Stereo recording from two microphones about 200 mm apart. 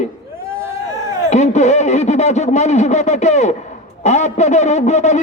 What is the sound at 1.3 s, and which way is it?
A man's voice, 35° left (ahead or behind).